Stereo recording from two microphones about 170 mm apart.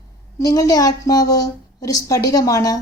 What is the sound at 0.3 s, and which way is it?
A woman's voice, 20° left (ahead or behind).